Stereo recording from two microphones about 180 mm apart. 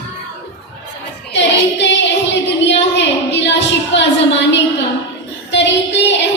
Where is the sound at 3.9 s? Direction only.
75° left (ahead or behind).